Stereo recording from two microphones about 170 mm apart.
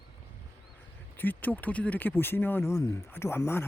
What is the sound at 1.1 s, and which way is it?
Speech, 10° left (ahead or behind).